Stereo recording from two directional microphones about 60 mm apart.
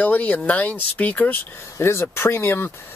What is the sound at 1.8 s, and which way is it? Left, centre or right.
Speech, left.